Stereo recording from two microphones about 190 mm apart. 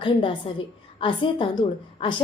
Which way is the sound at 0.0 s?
25° left (ahead or behind).